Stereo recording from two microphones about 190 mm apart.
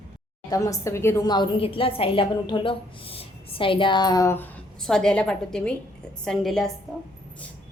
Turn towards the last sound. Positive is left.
turn(degrees=0)  # may be behind; listen again after turning